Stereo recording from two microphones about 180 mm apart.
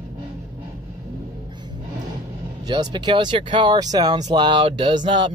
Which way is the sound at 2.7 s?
25° right (ahead or behind).